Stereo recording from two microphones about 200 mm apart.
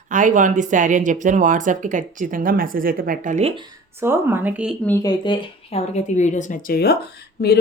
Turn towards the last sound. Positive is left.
turn(degrees=50)  # may be behind; listen again after turning